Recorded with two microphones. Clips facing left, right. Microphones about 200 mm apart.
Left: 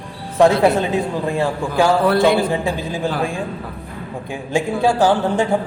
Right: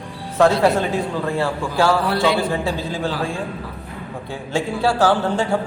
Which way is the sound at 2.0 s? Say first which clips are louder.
Left 5 dB; 55° left (ahead or behind).